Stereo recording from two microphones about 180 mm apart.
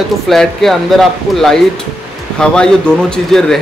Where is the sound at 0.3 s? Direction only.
Centre (ahead or behind).